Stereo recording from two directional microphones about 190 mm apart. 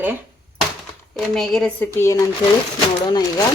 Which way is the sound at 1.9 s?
15° left (ahead or behind).